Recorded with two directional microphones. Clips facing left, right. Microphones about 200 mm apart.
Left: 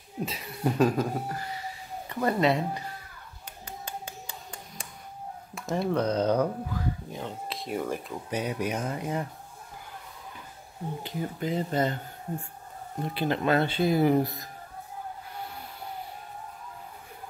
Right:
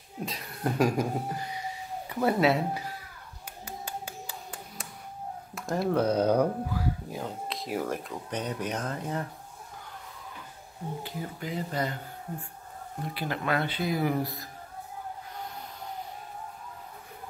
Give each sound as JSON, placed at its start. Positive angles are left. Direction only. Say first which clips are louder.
{"t": 0.2, "sound": "a sound", "louder": "left 3 dB", "side_deg": 0}
{"t": 0.7, "sound": "speech", "louder": "left 1 dB", "side_deg": -10}
{"t": 3.6, "sound": "clapping", "louder": "right 1 dB", "side_deg": -10}
{"t": 5.5, "sound": "speech", "louder": "even", "side_deg": 0}
{"t": 11.0, "sound": "speech", "louder": "left 8 dB", "side_deg": 20}
{"t": 13.1, "sound": "speech", "louder": "left 5 dB", "side_deg": 25}